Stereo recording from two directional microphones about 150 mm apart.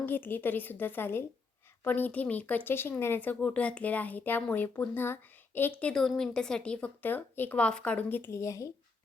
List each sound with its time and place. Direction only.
0.0 s speech: 15° left (ahead or behind)